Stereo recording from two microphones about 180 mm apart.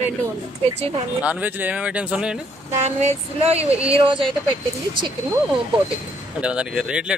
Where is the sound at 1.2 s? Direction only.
10° right (ahead or behind).